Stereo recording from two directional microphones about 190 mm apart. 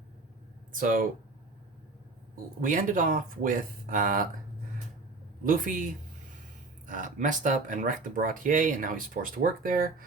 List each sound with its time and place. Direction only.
0.7 s speech: 45° right (ahead or behind)
2.3 s speech: 45° right (ahead or behind)
5.4 s speech: 45° right (ahead or behind)